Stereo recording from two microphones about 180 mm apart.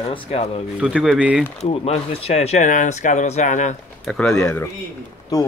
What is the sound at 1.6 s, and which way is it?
Speech, 35° left (ahead or behind).